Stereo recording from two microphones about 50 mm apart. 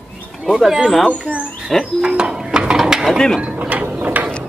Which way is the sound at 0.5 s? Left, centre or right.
Centre.